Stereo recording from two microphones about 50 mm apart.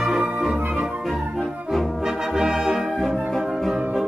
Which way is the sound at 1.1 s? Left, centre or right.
Centre.